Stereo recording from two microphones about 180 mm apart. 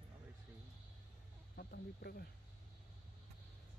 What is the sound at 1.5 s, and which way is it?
Speech, 60° left (ahead or behind).